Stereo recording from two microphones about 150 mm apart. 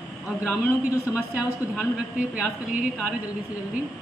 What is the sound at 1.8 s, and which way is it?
A woman's voice, 5° right (ahead or behind).